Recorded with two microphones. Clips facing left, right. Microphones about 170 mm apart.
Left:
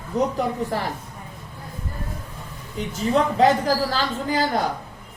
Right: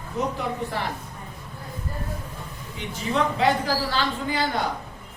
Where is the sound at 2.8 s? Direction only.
40° left (ahead or behind).